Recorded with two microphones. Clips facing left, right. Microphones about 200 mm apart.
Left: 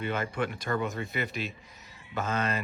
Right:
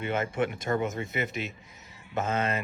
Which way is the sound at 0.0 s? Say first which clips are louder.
Right 2 dB; 25° right (ahead or behind).